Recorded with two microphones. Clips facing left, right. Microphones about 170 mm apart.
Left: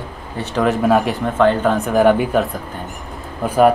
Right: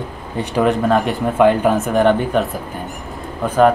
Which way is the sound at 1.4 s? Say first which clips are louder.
Right 2 dB; 10° right (ahead or behind).